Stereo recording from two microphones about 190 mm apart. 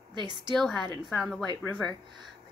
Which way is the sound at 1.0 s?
Centre (ahead or behind).